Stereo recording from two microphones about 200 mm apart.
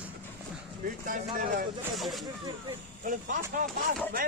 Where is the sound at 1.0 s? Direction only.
45° right (ahead or behind).